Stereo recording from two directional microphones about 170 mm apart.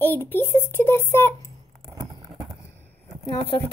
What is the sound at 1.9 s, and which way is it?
Patter, 25° right (ahead or behind).